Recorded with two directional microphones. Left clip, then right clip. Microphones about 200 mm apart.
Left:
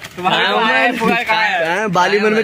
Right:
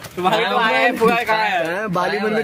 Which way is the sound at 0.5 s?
55° right (ahead or behind).